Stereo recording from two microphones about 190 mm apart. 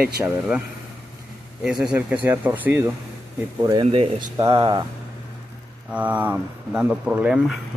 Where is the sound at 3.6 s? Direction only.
30° right (ahead or behind).